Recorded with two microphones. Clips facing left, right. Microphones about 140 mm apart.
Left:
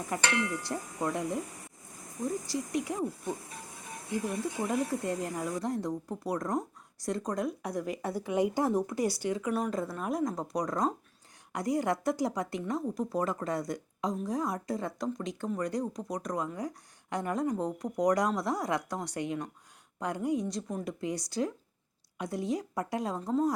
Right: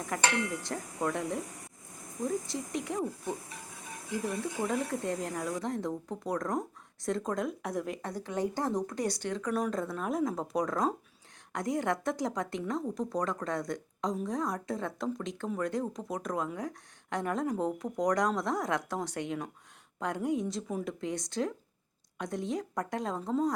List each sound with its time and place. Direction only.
0.7 s a woman's voice: 10° left (ahead or behind)
4.6 s a woman's voice: 5° left (ahead or behind)